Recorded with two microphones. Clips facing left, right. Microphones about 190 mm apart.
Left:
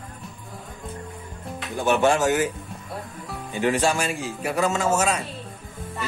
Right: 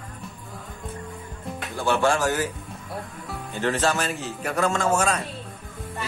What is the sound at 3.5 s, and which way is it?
Speech, 15° left (ahead or behind).